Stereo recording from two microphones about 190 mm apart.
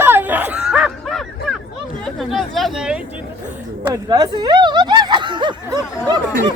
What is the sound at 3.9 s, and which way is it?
Snicker, 20° right (ahead or behind).